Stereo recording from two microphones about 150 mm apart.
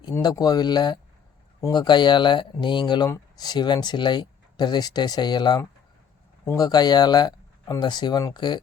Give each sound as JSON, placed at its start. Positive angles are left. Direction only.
{"t": 0.2, "sound": "speech", "side_deg": 25}